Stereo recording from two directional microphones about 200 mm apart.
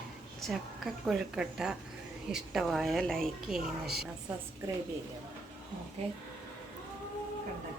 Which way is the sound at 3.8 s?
50° right (ahead or behind).